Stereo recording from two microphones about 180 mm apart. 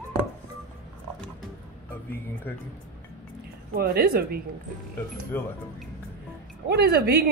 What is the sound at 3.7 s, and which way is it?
Speech, 55° right (ahead or behind).